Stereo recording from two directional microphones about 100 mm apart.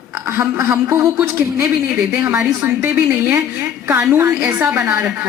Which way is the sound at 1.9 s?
15° right (ahead or behind).